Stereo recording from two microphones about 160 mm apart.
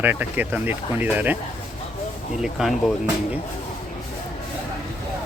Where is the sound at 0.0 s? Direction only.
10° right (ahead or behind).